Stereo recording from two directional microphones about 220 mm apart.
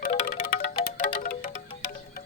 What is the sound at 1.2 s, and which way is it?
Music, 35° left (ahead or behind).